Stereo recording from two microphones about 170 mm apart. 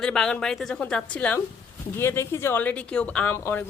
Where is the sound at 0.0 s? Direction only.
5° left (ahead or behind).